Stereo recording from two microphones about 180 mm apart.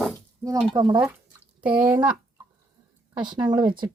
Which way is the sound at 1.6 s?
5° right (ahead or behind).